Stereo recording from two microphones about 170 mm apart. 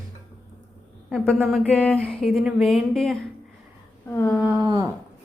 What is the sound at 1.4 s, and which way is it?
Speech, 10° right (ahead or behind).